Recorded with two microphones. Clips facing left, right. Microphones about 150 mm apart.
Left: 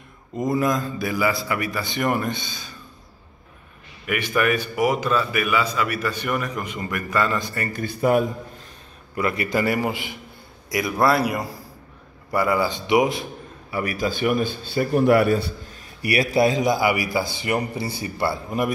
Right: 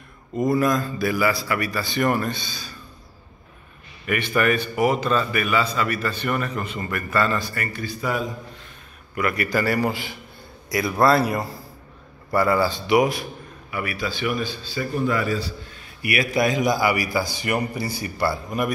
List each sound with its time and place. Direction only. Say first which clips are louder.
0.4 s a man's voice: right 2 dB; 20° left (ahead or behind)
4.0 s a man's voice: even; 10° left (ahead or behind)
7.7 s speech: left 9 dB; 55° left (ahead or behind)
9.1 s a man's voice: even; 25° left (ahead or behind)
13.7 s a man's voice: left 3 dB; 40° left (ahead or behind); by 15.5 s 60° left (ahead or behind)
15.7 s a man's voice: left 3 dB; 35° left (ahead or behind)